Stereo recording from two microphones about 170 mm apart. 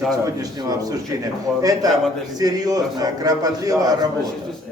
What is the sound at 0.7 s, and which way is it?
A man's voice, 20° right (ahead or behind).